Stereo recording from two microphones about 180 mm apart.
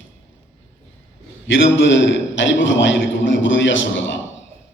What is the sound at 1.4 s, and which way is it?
A man's voice, 90° left.